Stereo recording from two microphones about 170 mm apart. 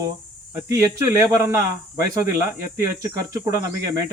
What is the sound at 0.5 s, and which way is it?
Speech, 20° right (ahead or behind).